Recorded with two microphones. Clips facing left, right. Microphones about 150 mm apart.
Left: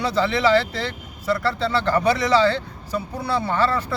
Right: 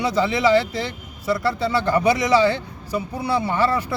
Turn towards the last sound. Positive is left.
turn(degrees=-15)  # may be behind; listen again after turning